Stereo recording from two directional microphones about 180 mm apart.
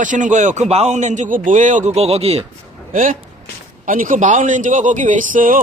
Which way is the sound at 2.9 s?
45° right (ahead or behind).